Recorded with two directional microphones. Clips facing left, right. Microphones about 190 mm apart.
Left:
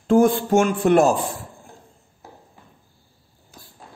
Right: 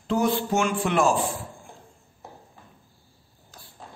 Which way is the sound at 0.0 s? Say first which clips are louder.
Left 7 dB; 50° left (ahead or behind).